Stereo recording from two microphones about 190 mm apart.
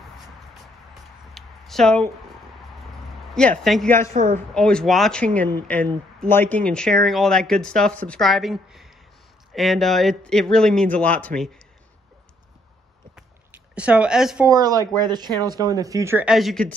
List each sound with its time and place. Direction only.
1.3 s a sound: centre (ahead or behind)
3.3 s speech: centre (ahead or behind)
4.1 s a man's voice: 45° right (ahead or behind)
4.6 s speech: 5° left (ahead or behind)
13.1 s a sound: 5° right (ahead or behind)
14.5 s speech: 20° right (ahead or behind)
16.3 s speech: centre (ahead or behind)